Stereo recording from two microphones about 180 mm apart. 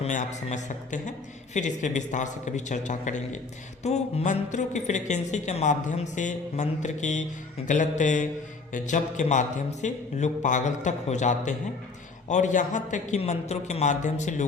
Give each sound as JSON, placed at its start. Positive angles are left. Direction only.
{"t": 0.0, "sound": "a woman's voice", "side_deg": 40}